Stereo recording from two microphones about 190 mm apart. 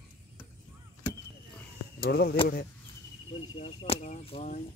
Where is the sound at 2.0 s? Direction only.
55° left (ahead or behind).